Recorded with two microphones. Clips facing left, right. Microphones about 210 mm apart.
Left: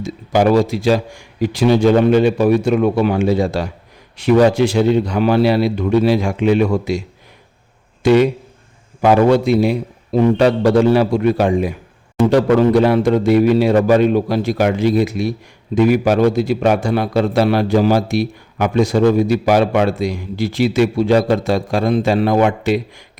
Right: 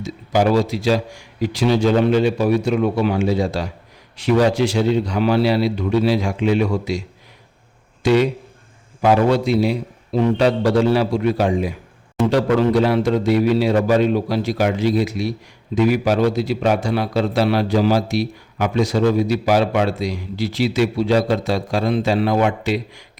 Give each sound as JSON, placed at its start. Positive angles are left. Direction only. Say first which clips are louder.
{"t": 0.0, "sound": "a man's voice", "louder": "left 3 dB", "side_deg": 55}
{"t": 8.0, "sound": "a man's voice", "louder": "left 4 dB", "side_deg": 55}